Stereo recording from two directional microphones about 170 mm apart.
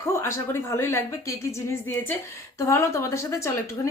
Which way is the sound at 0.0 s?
15° left (ahead or behind).